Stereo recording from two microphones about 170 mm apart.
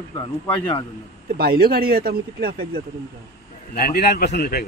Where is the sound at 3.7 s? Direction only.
65° left (ahead or behind).